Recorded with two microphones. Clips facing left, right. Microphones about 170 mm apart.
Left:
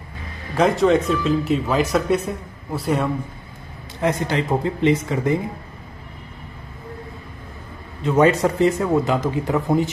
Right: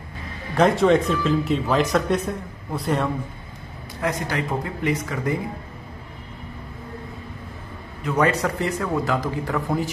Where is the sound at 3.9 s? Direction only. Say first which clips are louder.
Left 4 dB; 25° left (ahead or behind).